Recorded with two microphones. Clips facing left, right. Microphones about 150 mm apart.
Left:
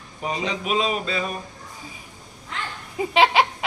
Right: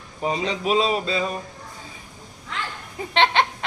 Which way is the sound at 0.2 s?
30° right (ahead or behind).